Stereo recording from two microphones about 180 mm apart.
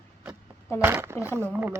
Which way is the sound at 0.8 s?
15° right (ahead or behind).